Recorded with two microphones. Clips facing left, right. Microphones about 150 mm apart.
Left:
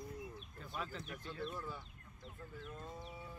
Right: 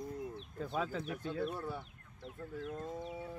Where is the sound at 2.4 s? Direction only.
90° right.